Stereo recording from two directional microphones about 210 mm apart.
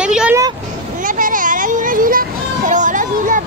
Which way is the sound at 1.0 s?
40° right (ahead or behind).